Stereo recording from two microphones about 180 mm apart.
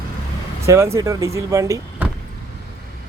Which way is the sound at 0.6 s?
15° right (ahead or behind).